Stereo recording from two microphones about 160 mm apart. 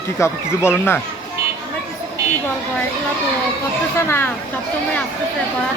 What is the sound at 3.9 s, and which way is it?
Speech, 15° left (ahead or behind).